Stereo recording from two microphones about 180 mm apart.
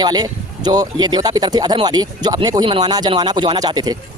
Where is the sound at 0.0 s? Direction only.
20° right (ahead or behind).